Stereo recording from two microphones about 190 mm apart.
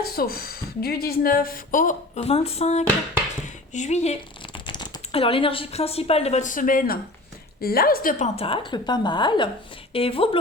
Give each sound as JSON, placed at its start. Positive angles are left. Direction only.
{"t": 0.0, "sound": "speech", "side_deg": 50}
{"t": 8.4, "sound": "a woman's voice", "side_deg": 25}